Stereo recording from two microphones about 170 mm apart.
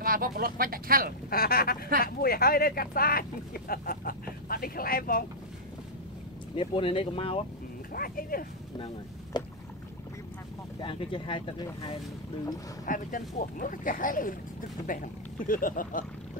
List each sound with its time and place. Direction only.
0.0 s speech: 55° right (ahead or behind)
1.3 s speech: 60° left (ahead or behind)
6.5 s speech: 30° left (ahead or behind)
7.9 s speech: 60° left (ahead or behind)
8.7 s speech: 30° left (ahead or behind)
10.8 s speech: 30° left (ahead or behind)
12.8 s speech: 50° left (ahead or behind)